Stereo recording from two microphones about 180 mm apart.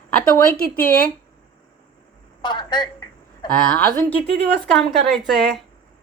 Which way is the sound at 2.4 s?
25° left (ahead or behind).